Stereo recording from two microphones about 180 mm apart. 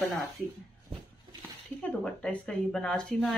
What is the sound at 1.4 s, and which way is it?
Speech, 5° left (ahead or behind).